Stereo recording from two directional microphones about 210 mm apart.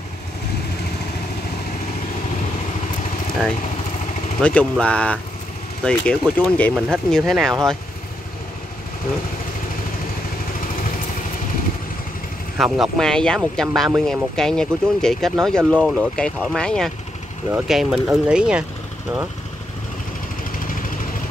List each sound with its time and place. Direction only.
4.4 s speech: 5° left (ahead or behind)
12.5 s speech: centre (ahead or behind)